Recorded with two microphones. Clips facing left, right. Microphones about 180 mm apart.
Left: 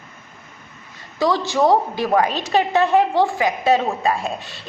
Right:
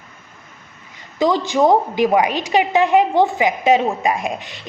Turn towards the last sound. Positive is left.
turn(degrees=-15)  # may be behind; listen again after turning